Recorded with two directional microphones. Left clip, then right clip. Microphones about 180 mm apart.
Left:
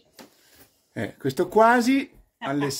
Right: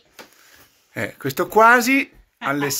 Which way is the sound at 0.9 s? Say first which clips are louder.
Right 3 dB; 15° left (ahead or behind).